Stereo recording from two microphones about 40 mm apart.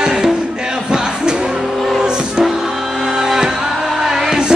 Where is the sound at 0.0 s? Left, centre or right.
Centre.